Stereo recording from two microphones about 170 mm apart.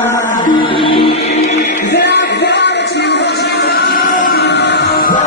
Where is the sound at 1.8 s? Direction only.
80° left; by 5.3 s 55° left (ahead or behind).